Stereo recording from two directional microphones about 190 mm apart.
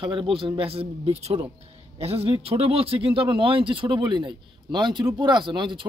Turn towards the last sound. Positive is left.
turn(degrees=-25)  # may be behind; listen again after turning